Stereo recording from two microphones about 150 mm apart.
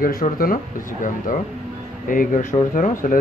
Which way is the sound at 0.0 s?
70° left (ahead or behind).